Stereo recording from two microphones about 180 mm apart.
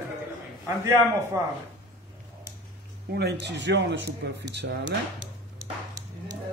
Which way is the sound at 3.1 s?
65° right (ahead or behind).